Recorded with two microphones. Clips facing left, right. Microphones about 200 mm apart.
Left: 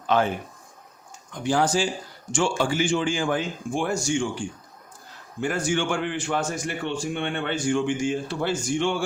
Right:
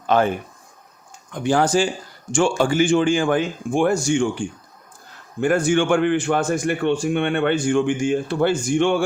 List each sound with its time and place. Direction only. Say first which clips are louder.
0.1 s a man's voice: right 4 dB; 50° right (ahead or behind)